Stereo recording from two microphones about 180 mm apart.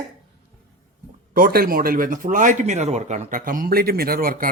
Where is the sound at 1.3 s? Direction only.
55° right (ahead or behind).